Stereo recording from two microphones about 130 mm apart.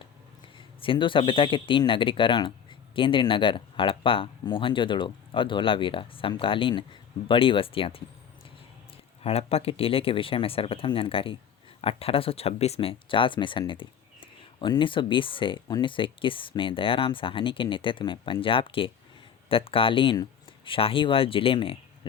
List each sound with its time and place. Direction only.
0.8 s speech: 40° left (ahead or behind)
9.2 s speech: 50° left (ahead or behind)